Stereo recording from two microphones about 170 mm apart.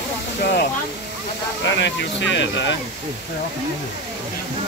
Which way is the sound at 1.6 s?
90° left.